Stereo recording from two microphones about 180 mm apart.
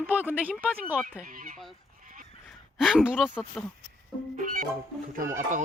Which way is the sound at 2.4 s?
Centre (ahead or behind).